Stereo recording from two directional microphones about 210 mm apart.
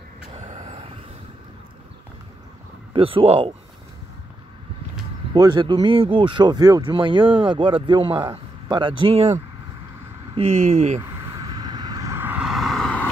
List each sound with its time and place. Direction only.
0.4 s vehicle: 35° right (ahead or behind)
2.9 s speech: 25° right (ahead or behind)
5.3 s speech: 20° right (ahead or behind)
11.0 s vehicle: 20° right (ahead or behind); by 13.1 s 5° left (ahead or behind)